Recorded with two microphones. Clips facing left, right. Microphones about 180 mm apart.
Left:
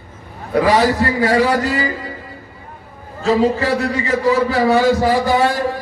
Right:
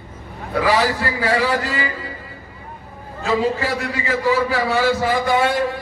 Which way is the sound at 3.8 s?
40° left (ahead or behind).